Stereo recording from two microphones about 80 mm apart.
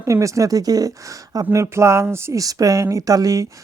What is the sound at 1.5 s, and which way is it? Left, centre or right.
Speech, right.